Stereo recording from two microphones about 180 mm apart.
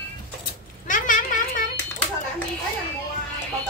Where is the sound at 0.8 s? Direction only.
45° left (ahead or behind).